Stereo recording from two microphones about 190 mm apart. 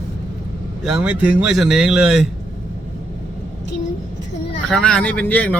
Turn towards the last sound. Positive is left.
turn(degrees=10)  # may be behind; listen again after turning